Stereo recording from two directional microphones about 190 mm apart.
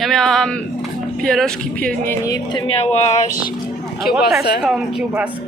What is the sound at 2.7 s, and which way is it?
Speech, 35° left (ahead or behind).